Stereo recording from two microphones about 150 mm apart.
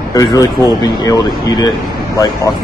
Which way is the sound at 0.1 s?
20° left (ahead or behind).